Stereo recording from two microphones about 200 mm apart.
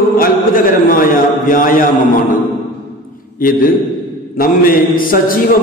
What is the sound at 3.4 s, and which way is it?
Speech, 45° left (ahead or behind).